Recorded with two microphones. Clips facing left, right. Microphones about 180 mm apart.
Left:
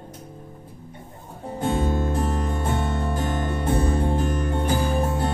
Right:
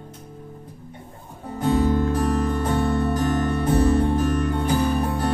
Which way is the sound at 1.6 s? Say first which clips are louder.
Right 4 dB; 20° left (ahead or behind).